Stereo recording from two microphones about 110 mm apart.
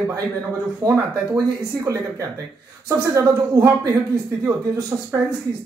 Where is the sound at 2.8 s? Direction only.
35° right (ahead or behind).